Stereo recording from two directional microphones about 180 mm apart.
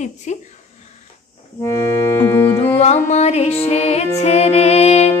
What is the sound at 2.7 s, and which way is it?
Speech, 40° left (ahead or behind).